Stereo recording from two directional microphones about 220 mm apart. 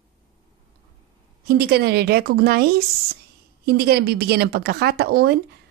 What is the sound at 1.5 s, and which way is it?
A woman's voice, 45° right (ahead or behind).